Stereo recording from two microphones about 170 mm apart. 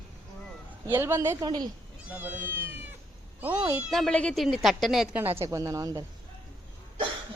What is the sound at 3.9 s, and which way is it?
A woman's voice, 5° left (ahead or behind).